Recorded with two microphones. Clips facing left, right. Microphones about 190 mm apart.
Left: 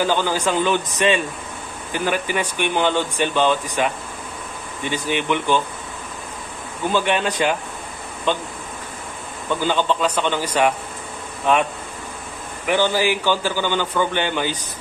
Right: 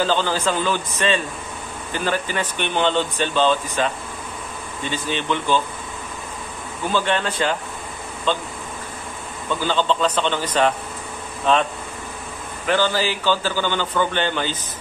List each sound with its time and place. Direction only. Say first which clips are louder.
0.0 s speech: even; 15° left (ahead or behind)
6.9 s speech: left 2 dB; 15° left (ahead or behind)
9.5 s speech: left 1 dB; 15° left (ahead or behind)
12.6 s speech: left 2 dB; 15° left (ahead or behind)